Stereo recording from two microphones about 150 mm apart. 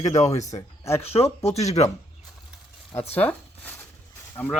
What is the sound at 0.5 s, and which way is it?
Speech, 15° left (ahead or behind).